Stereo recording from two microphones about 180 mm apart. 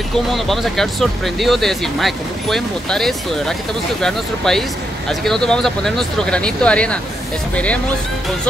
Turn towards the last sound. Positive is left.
turn(degrees=5)  # may be behind; listen again after turning